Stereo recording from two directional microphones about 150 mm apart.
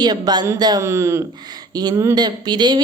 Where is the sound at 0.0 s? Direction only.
25° right (ahead or behind).